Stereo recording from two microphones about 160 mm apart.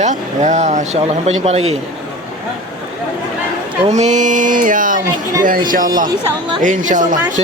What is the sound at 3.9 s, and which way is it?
Speech, 45° right (ahead or behind).